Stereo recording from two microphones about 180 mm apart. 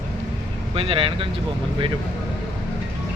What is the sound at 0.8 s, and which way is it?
Speech, 30° right (ahead or behind).